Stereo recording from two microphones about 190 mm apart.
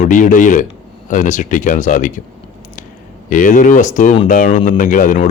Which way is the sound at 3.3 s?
40° left (ahead or behind).